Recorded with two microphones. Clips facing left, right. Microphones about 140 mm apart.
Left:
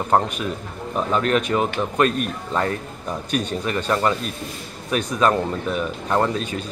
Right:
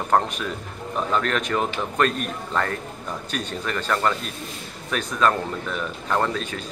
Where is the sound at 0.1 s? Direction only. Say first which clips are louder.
Left 1 dB; 10° left (ahead or behind).